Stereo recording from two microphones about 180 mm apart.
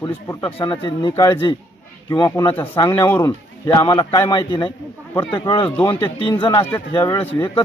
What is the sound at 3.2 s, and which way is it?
A man's voice, 25° left (ahead or behind).